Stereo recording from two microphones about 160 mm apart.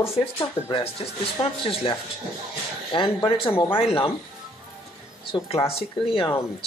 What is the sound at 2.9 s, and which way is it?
Speech, 30° left (ahead or behind).